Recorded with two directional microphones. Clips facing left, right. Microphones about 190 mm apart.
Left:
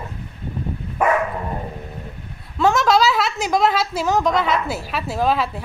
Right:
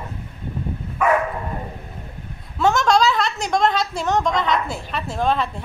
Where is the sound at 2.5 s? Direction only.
Centre (ahead or behind).